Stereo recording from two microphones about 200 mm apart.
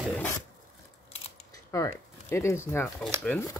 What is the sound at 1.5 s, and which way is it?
Speech, 15° left (ahead or behind).